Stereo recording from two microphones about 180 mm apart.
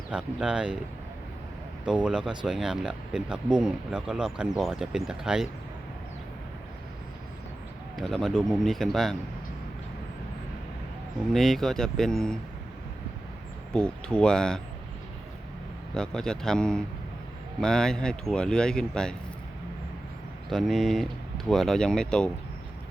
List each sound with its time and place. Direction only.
0.1 s speech: 5° right (ahead or behind)
1.8 s speech: 5° right (ahead or behind)
7.9 s speech: centre (ahead or behind)
11.3 s speech: centre (ahead or behind)
13.7 s speech: 5° left (ahead or behind)
16.0 s speech: 5° left (ahead or behind)
20.5 s speech: centre (ahead or behind)